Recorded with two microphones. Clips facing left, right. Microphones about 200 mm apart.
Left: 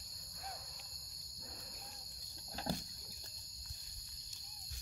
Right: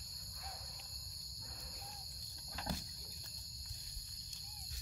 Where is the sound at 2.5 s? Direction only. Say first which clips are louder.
Left 3 dB; 30° left (ahead or behind).